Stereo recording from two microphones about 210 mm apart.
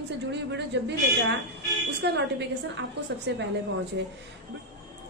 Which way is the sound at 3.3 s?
55° right (ahead or behind).